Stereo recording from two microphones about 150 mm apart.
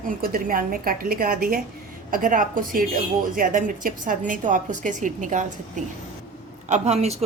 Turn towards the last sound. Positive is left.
turn(degrees=-50)  # may be behind; listen again after turning